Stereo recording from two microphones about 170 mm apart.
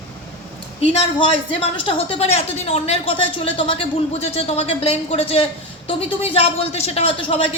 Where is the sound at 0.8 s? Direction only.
35° left (ahead or behind).